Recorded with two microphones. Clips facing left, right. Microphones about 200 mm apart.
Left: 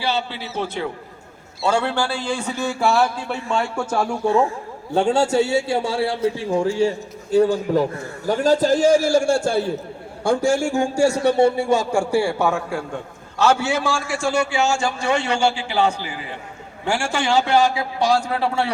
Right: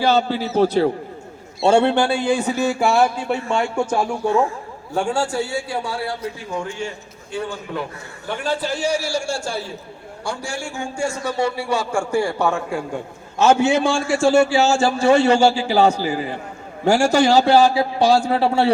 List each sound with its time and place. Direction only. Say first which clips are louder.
0.0 s a man's voice: right 7 dB; 45° right (ahead or behind)
1.6 s speech: right 6 dB; 25° right (ahead or behind); by 2.7 s 5° right (ahead or behind)
2.7 s speech: left 2 dB; 15° right (ahead or behind)
4.9 s a man's voice: left 4 dB; 20° left (ahead or behind); by 10.8 s 45° left (ahead or behind)
10.9 s speech: left 5 dB; 70° left (ahead or behind)
11.3 s speech: left 6 dB; 30° left (ahead or behind)
11.5 s a man's voice: left 4 dB; 45° left (ahead or behind)
12.2 s a man's voice: even; 5° left (ahead or behind)
13.4 s a man's voice: right 4 dB; 25° right (ahead or behind)